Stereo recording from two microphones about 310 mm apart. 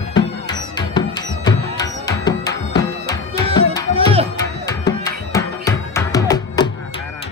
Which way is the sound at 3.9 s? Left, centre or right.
Centre.